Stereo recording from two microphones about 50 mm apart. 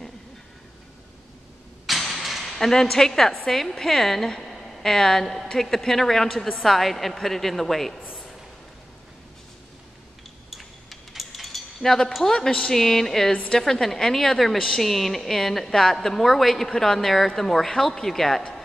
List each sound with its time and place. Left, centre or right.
1.9 s a woman's voice: centre
10.5 s cutlery: centre
12.4 s a woman's voice: centre